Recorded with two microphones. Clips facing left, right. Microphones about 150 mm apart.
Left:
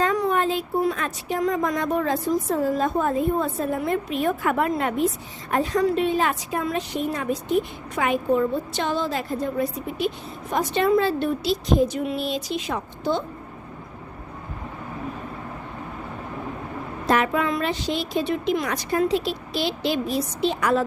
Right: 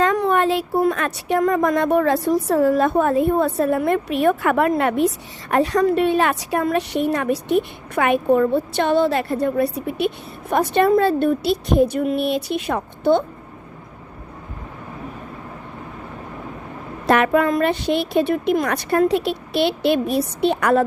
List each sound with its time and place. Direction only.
0.0 s a woman's voice: 65° right (ahead or behind)
10.8 s a woman's voice: 50° right (ahead or behind)
17.1 s a woman's voice: 60° right (ahead or behind)